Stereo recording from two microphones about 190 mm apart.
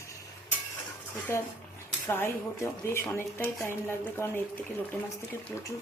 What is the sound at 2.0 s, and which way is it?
Speech, 10° left (ahead or behind).